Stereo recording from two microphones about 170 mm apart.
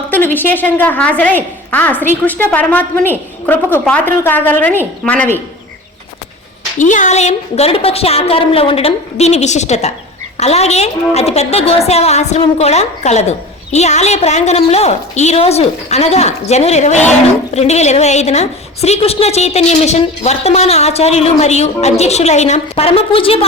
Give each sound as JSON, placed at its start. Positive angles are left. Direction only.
{"t": 0.1, "sound": "a woman's voice", "side_deg": 10}
{"t": 6.7, "sound": "a woman's voice", "side_deg": 45}